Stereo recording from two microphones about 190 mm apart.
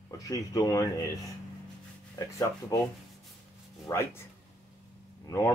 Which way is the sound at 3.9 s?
15° left (ahead or behind).